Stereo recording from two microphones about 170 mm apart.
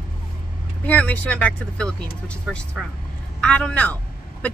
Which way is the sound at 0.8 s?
10° left (ahead or behind).